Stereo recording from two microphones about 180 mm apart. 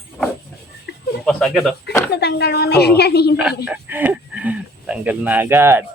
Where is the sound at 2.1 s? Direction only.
65° left (ahead or behind).